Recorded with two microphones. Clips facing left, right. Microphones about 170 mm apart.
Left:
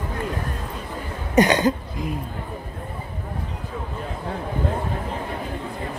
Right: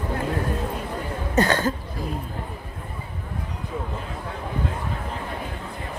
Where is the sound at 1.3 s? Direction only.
15° left (ahead or behind).